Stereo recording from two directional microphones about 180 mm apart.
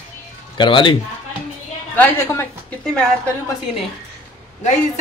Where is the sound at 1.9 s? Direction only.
15° left (ahead or behind).